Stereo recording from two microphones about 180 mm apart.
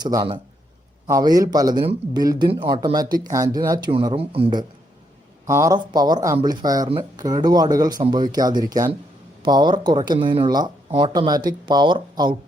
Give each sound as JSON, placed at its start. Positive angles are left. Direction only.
{"t": 0.0, "sound": "speech", "side_deg": -20}
{"t": 5.5, "sound": "speech", "side_deg": -20}